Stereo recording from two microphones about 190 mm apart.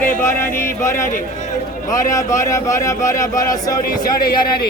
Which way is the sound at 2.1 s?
15° left (ahead or behind).